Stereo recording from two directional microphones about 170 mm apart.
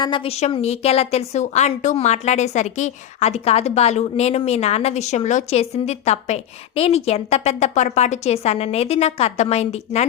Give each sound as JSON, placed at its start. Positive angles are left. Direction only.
{"t": 0.0, "sound": "a woman's voice", "side_deg": 30}